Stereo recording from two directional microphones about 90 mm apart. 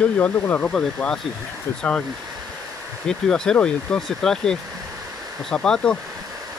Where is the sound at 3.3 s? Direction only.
10° left (ahead or behind).